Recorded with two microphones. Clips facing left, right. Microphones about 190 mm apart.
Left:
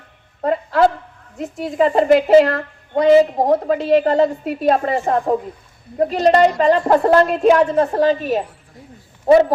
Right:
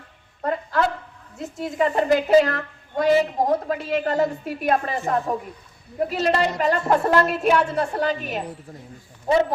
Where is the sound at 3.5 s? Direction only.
25° left (ahead or behind).